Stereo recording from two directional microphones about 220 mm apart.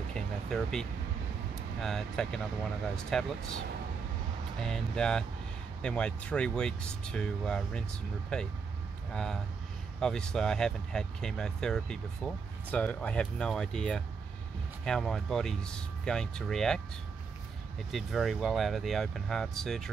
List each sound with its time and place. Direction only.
0.1 s a sound: 5° left (ahead or behind)
1.5 s speech: centre (ahead or behind)
4.6 s speech: 5° left (ahead or behind)
17.9 s speech: centre (ahead or behind)